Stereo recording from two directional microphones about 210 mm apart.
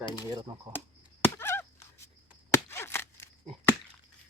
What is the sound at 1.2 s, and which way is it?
Chop, 10° left (ahead or behind).